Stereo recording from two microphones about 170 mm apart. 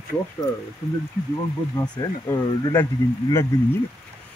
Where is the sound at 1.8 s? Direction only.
20° left (ahead or behind).